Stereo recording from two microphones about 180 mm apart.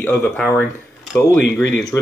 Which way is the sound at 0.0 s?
10° left (ahead or behind).